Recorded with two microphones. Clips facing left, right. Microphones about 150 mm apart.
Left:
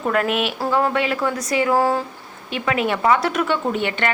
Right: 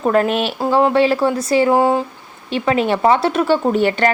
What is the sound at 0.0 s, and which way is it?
A woman's voice, 35° right (ahead or behind).